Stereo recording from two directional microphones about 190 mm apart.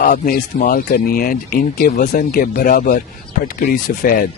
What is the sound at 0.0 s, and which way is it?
Speech, 45° left (ahead or behind).